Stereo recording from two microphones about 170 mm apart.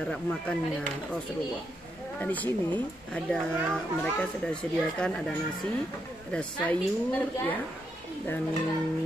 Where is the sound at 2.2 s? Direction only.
10° left (ahead or behind).